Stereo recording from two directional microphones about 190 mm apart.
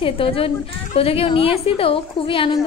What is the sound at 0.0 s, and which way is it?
A woman's voice, 30° left (ahead or behind).